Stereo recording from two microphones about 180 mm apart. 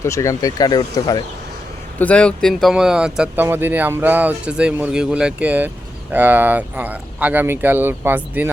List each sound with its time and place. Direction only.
0.0 s speech: 15° left (ahead or behind)
2.0 s speech: 5° left (ahead or behind); by 8.4 s 10° right (ahead or behind)